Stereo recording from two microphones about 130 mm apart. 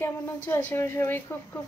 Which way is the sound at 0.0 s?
20° left (ahead or behind).